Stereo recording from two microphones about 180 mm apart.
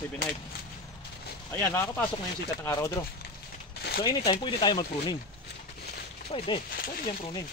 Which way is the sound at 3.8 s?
60° left (ahead or behind).